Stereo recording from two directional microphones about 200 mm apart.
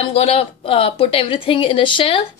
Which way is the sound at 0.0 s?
30° left (ahead or behind).